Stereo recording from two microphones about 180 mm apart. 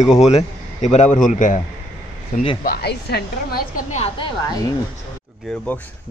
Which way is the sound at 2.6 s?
60° left (ahead or behind).